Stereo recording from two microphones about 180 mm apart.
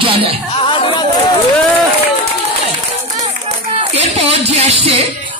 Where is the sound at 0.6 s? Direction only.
30° left (ahead or behind).